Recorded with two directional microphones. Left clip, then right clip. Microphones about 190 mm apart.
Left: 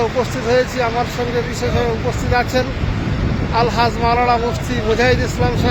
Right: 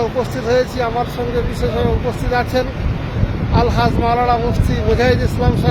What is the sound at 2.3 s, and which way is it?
Speech, 10° left (ahead or behind).